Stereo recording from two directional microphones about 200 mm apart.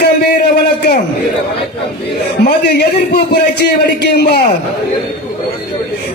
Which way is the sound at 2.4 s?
50° left (ahead or behind).